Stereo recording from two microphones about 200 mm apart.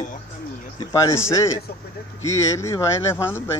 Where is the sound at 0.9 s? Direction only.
15° left (ahead or behind).